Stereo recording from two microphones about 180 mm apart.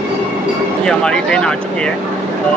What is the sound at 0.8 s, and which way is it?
Speech, 5° left (ahead or behind).